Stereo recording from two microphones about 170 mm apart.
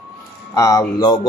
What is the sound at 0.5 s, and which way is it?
Speech, 20° left (ahead or behind).